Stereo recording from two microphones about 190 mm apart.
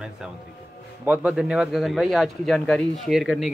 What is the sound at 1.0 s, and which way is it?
Speech, 10° right (ahead or behind).